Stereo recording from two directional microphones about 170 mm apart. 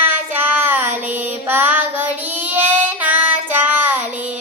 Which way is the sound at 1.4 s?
10° right (ahead or behind).